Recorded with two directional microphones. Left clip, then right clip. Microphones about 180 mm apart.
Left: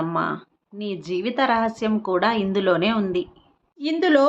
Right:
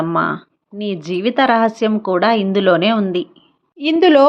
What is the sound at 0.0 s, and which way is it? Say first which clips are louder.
A woman's voice: right 7 dB; 35° right (ahead or behind).